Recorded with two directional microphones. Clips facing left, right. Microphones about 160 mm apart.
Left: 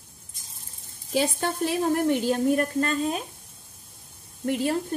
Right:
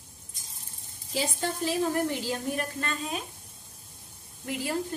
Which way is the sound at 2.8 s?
40° left (ahead or behind).